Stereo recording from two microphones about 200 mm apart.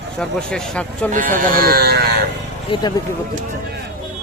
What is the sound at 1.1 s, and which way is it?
Speech, 40° right (ahead or behind).